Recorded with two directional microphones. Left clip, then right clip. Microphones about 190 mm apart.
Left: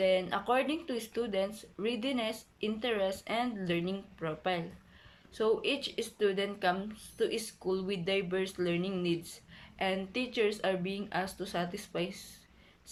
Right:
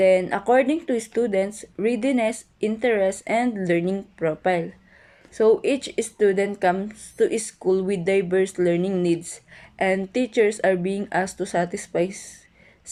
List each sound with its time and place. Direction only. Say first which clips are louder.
0.0 s speech: right 11 dB; 40° right (ahead or behind)